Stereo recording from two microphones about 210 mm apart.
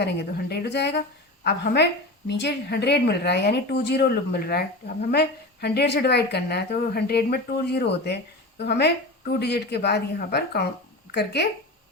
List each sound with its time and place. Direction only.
0.0 s a woman's voice: 50° left (ahead or behind)